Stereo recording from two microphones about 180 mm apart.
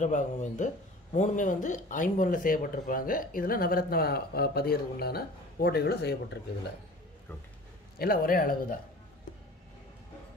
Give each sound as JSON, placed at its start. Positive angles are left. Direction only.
{"t": 0.0, "sound": "speech", "side_deg": 40}
{"t": 8.0, "sound": "a man's voice", "side_deg": 55}